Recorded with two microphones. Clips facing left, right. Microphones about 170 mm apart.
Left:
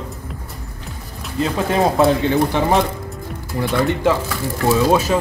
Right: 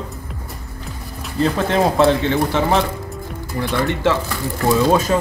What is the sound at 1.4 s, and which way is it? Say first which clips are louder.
Speech: right 1 dB; 5° left (ahead or behind).